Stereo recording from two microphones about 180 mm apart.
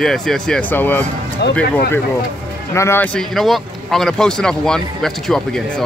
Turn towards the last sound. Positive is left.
turn(degrees=0)  # may be behind; listen again after turning